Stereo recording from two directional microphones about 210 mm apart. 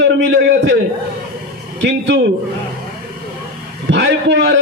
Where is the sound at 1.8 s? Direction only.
55° right (ahead or behind).